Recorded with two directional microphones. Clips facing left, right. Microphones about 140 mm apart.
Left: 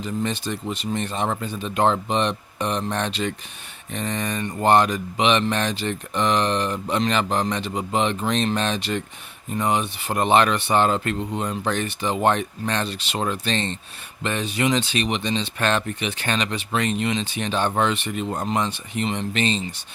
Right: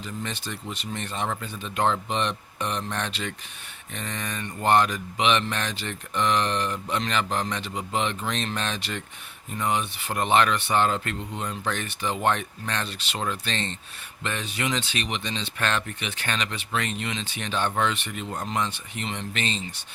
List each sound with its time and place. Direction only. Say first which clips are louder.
0.5 s speech: left 7 dB; 20° left (ahead or behind)